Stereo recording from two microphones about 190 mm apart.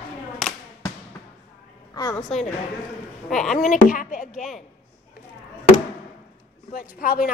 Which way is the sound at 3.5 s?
45° left (ahead or behind).